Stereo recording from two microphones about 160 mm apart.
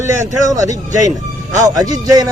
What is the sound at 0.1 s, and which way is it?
Speech, 20° right (ahead or behind).